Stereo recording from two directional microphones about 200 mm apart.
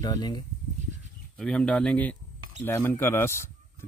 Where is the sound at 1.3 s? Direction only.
5° left (ahead or behind).